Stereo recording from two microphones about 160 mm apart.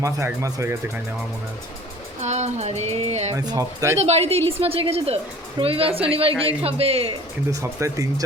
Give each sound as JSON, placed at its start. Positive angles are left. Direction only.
{"t": 0.0, "sound": "speech", "side_deg": -20}
{"t": 2.2, "sound": "music", "side_deg": -45}
{"t": 3.3, "sound": "speech", "side_deg": -25}
{"t": 4.0, "sound": "a woman's voice", "side_deg": -40}
{"t": 7.5, "sound": "speech", "side_deg": -20}